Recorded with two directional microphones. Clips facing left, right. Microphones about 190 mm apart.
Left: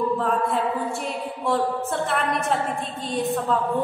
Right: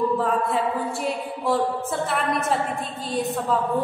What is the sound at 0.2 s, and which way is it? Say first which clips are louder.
A woman's voice: even; centre (ahead or behind).